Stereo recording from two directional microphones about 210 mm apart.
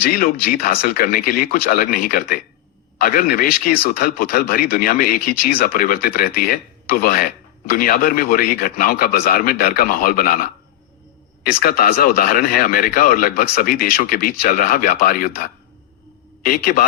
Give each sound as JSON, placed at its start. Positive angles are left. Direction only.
{"t": 0.0, "sound": "speech", "side_deg": 45}